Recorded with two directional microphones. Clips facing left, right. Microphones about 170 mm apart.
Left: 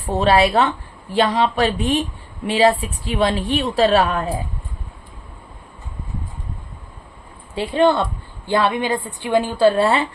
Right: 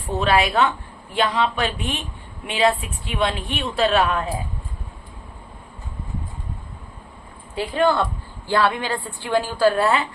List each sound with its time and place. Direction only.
0.0 s a woman's voice: 35° left (ahead or behind)
7.5 s a woman's voice: 25° left (ahead or behind)